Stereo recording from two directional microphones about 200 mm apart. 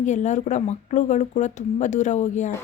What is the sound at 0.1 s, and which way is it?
Speech, 35° left (ahead or behind).